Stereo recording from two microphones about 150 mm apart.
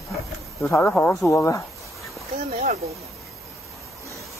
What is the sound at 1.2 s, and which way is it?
Speech, 20° left (ahead or behind).